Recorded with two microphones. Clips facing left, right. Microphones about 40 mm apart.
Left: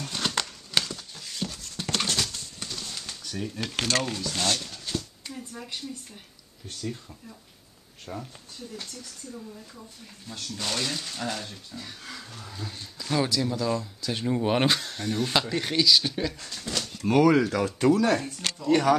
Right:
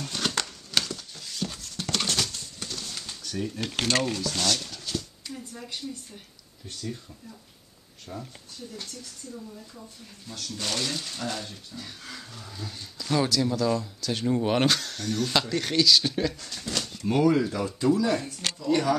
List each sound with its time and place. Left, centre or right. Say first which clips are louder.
0.0 s a sound: even; centre
2.0 s pigeon: even; centre
3.7 s speech: right 1 dB; centre
4.0 s speech: right 2 dB; centre
4.6 s a sound: even; centre
6.8 s speech: left 1 dB; centre
8.1 s speech: left 2 dB; left
10.6 s speech: even; centre
16.5 s a sound: even; centre
17.1 s speech: left 3 dB; left
18.7 s speech: left 3 dB; left